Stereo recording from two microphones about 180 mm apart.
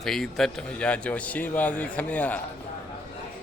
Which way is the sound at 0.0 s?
Centre (ahead or behind).